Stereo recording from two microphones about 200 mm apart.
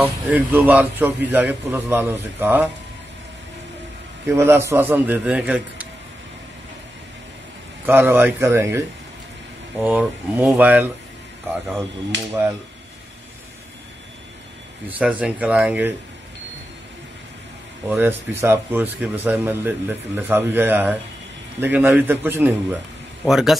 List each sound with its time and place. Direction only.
0.0 s speech: 10° right (ahead or behind)
4.3 s speech: 10° right (ahead or behind)
7.8 s speech: 10° right (ahead or behind)
14.9 s speech: 5° right (ahead or behind)
17.8 s speech: 10° right (ahead or behind)